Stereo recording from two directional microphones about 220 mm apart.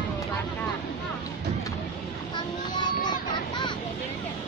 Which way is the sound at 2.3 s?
20° left (ahead or behind).